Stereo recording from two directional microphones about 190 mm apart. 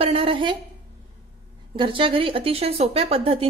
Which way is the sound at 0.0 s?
30° right (ahead or behind).